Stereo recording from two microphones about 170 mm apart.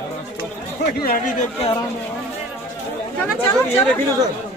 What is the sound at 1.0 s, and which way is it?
Speech, 50° left (ahead or behind).